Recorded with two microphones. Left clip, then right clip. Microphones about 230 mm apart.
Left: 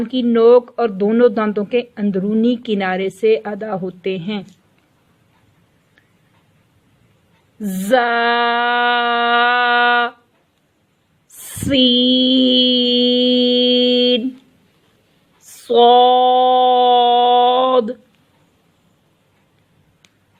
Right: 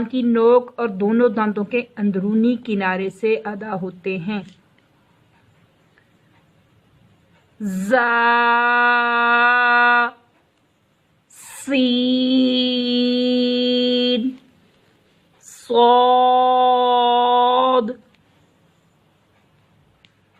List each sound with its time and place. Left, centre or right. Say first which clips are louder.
0.0 s speech: left 4 dB; left
7.6 s speech: left 2 dB; left
11.7 s mantra: left 6 dB; left
15.6 s a sound: left 3 dB; centre